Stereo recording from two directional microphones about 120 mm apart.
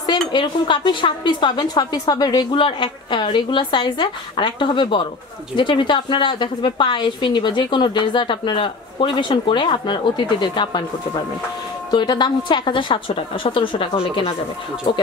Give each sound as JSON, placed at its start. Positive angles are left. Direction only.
{"t": 0.3, "sound": "a woman's voice", "side_deg": 40}